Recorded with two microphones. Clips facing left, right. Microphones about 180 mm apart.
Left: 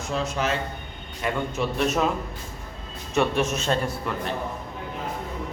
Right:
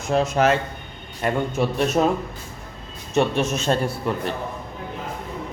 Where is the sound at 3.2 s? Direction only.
25° right (ahead or behind).